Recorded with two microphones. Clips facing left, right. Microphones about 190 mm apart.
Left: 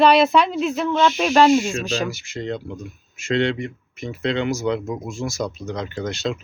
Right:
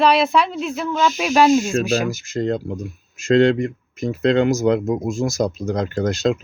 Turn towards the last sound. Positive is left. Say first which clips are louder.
# right 6 dB
turn(degrees=-40)  # may be behind; listen again after turning